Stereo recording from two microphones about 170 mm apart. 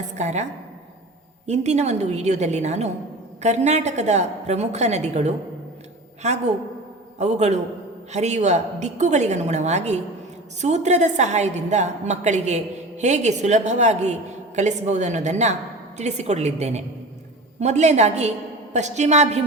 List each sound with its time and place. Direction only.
0.2 s a woman's voice: 40° right (ahead or behind)
1.5 s a woman's voice: 40° right (ahead or behind)